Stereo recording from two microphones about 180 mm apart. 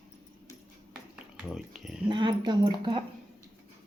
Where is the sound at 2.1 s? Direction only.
25° right (ahead or behind).